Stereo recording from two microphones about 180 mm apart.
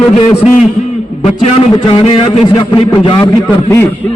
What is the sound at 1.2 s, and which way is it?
A man's voice, 35° left (ahead or behind).